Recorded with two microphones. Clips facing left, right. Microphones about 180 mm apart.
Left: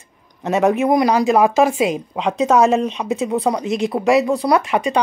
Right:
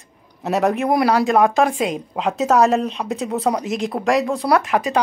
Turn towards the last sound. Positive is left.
turn(degrees=0)  # may be behind; listen again after turning